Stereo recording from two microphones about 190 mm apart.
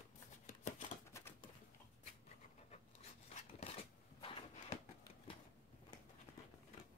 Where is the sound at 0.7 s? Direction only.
40° left (ahead or behind).